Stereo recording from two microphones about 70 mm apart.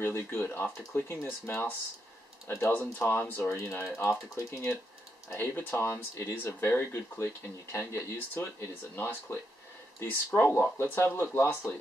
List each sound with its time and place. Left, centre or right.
0.0 s speech: left